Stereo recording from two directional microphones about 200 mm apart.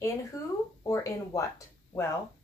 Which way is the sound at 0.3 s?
15° left (ahead or behind).